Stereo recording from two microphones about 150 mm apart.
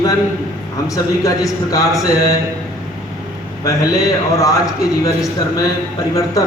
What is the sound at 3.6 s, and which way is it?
Speech, 20° left (ahead or behind).